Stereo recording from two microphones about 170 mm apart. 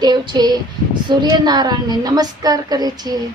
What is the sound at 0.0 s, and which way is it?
Speech, 25° right (ahead or behind).